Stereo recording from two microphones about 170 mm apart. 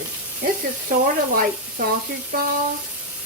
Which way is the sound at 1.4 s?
60° right (ahead or behind).